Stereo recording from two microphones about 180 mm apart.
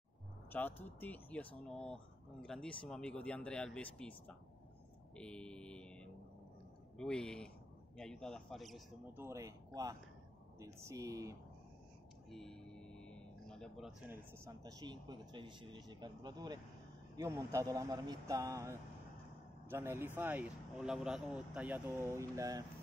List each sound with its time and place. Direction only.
0.5 s speech: 10° left (ahead or behind)
5.1 s a sound: 5° left (ahead or behind)
7.0 s speech: 5° left (ahead or behind)
9.0 s speech: 10° right (ahead or behind)
10.6 s speech: 15° right (ahead or behind)
12.3 s music: centre (ahead or behind)
14.1 s speech: 15° right (ahead or behind)